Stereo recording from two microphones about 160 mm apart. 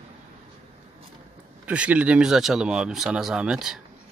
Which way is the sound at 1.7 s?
10° right (ahead or behind).